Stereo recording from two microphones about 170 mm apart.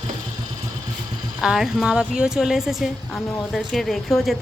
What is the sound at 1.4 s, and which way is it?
A woman's voice, 5° right (ahead or behind).